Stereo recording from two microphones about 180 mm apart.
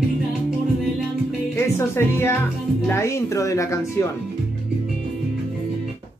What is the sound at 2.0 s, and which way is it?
Speech, 15° left (ahead or behind).